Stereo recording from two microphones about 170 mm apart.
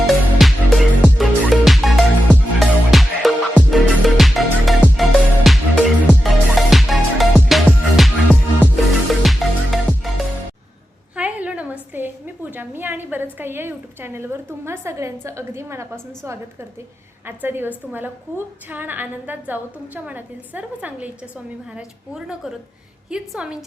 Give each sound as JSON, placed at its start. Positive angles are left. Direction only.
{"t": 0.1, "sound": "music", "side_deg": 0}
{"t": 9.2, "sound": "music", "side_deg": 0}
{"t": 11.1, "sound": "a sound", "side_deg": -10}
{"t": 13.4, "sound": "a woman's voice", "side_deg": -15}